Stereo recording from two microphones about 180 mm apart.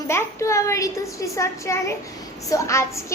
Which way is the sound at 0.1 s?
15° left (ahead or behind).